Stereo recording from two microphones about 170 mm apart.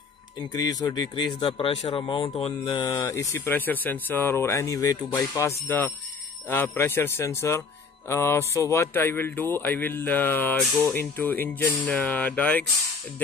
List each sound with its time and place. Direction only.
0.5 s speech: 20° left (ahead or behind)